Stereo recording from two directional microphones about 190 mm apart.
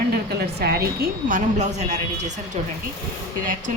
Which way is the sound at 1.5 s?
35° right (ahead or behind).